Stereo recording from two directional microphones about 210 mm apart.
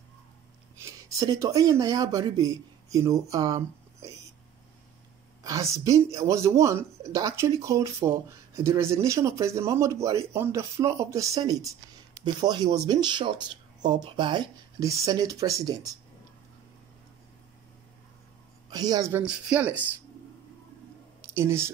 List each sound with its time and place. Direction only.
1.1 s speech: 15° right (ahead or behind)
5.4 s speech: 15° right (ahead or behind)
18.7 s speech: 20° right (ahead or behind)
21.4 s speech: 10° right (ahead or behind)